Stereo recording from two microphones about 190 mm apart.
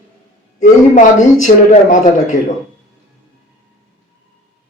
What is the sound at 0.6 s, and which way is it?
A man's voice, 40° left (ahead or behind).